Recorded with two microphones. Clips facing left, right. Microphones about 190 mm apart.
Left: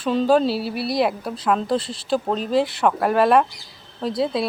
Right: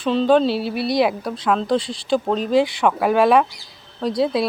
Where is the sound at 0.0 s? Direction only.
10° left (ahead or behind).